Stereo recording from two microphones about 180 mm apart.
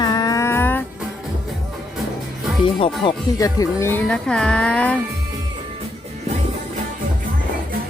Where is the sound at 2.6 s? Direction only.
30° left (ahead or behind).